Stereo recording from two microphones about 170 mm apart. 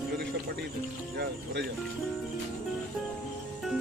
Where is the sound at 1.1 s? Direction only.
80° right.